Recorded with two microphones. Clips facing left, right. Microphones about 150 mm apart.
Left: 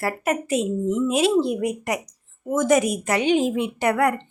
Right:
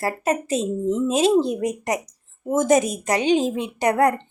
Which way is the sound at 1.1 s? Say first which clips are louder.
Right 2 dB; 40° right (ahead or behind).